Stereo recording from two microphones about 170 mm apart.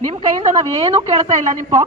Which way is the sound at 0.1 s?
25° right (ahead or behind).